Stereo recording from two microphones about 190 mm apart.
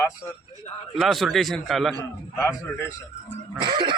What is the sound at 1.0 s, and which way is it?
Speech, centre (ahead or behind).